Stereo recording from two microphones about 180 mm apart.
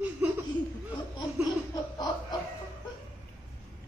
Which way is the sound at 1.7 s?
20° left (ahead or behind).